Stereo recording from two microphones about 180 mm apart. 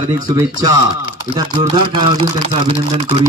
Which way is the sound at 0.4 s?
20° right (ahead or behind).